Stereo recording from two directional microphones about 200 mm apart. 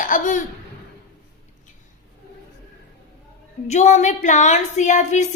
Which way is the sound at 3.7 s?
35° left (ahead or behind).